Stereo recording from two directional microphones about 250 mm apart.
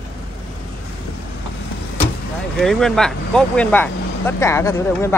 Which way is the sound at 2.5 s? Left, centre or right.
Centre.